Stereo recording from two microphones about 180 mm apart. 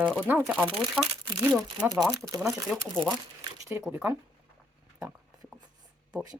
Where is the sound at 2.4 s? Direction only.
Centre (ahead or behind).